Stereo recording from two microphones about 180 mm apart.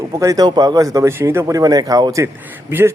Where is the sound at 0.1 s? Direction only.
15° right (ahead or behind).